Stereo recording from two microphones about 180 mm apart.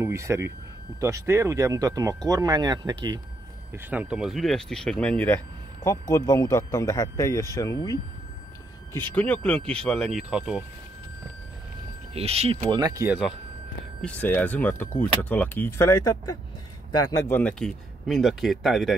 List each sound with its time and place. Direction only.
0.0 s speech: 15° right (ahead or behind)
3.7 s speech: 10° right (ahead or behind); by 8.0 s 20° left (ahead or behind)
9.1 s speech: 5° left (ahead or behind)
12.1 s speech: 35° right (ahead or behind)
12.7 s speech: 20° right (ahead or behind)
14.0 s speech: 10° left (ahead or behind)
17.3 s speech: 5° left (ahead or behind)